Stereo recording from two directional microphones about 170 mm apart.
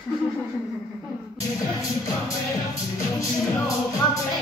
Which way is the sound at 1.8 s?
20° left (ahead or behind).